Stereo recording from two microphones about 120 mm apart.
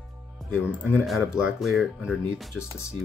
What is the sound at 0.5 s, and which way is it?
Speech, 15° left (ahead or behind).